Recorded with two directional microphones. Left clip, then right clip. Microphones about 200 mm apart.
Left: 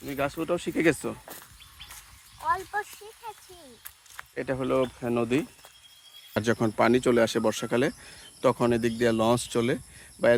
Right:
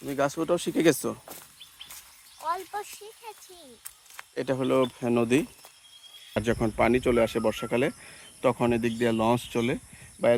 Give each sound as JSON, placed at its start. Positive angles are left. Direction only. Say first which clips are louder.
{"t": 0.0, "sound": "speech", "louder": "right 3 dB", "side_deg": -20}
{"t": 1.2, "sound": "a sound", "louder": "left 1 dB", "side_deg": -10}
{"t": 2.4, "sound": "speech", "louder": "left 3 dB", "side_deg": -10}
{"t": 6.3, "sound": "speech", "louder": "left 1 dB", "side_deg": 20}
{"t": 6.6, "sound": "speech", "louder": "left 1 dB", "side_deg": 5}
{"t": 6.8, "sound": "speech", "louder": "left 1 dB", "side_deg": 15}